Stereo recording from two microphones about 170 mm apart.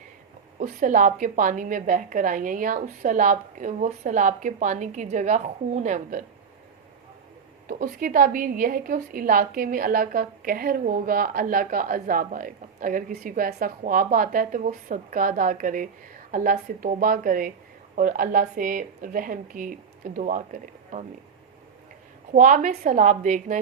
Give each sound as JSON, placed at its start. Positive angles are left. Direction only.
{"t": 0.6, "sound": "a woman's voice", "side_deg": -50}
{"t": 7.7, "sound": "a woman's voice", "side_deg": -55}
{"t": 22.3, "sound": "a woman's voice", "side_deg": -50}